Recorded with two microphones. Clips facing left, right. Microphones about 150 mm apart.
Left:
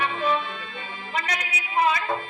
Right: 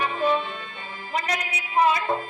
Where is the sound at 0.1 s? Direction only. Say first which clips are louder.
Right 2 dB; 40° right (ahead or behind).